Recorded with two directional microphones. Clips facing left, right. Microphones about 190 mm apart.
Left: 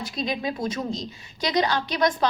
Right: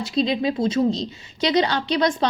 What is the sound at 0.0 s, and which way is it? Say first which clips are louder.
A woman's voice: right 7 dB; 25° right (ahead or behind).